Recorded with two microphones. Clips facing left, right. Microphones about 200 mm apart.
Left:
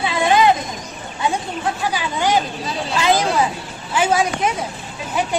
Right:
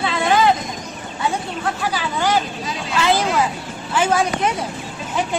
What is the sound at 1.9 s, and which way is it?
Speech, 15° left (ahead or behind).